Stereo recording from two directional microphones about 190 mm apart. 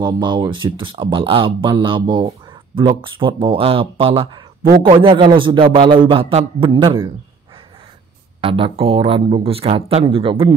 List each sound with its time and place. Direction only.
0.0 s speech: 25° right (ahead or behind)
8.4 s speech: 30° right (ahead or behind)